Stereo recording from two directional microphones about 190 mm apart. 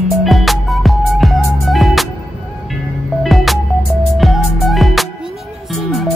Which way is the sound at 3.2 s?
Centre (ahead or behind).